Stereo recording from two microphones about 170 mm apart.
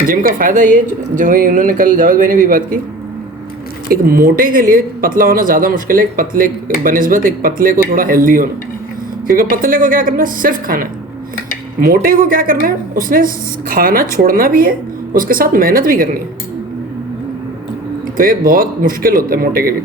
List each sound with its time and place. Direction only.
0.1 s speech: 55° right (ahead or behind)
3.8 s speech: 55° right (ahead or behind)
18.2 s speech: 55° right (ahead or behind)